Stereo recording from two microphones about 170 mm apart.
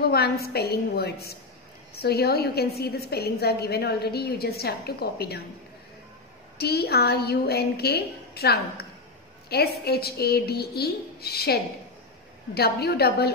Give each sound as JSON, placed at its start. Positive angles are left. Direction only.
{"t": 0.1, "sound": "a woman's voice", "side_deg": 65}
{"t": 6.6, "sound": "a woman's voice", "side_deg": 70}